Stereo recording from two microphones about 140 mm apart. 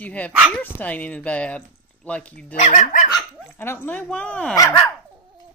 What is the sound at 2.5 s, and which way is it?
Speech, 60° left (ahead or behind).